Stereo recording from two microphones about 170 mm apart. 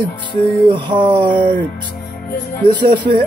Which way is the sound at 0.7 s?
30° right (ahead or behind).